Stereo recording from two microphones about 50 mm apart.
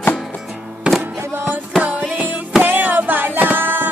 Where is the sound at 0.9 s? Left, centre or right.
Right.